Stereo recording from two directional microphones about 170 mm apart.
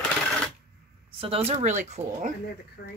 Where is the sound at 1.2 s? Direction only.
35° right (ahead or behind).